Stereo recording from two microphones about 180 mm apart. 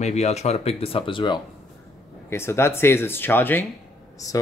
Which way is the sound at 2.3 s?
15° left (ahead or behind).